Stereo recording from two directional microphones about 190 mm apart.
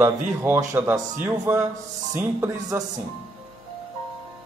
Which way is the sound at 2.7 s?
10° right (ahead or behind).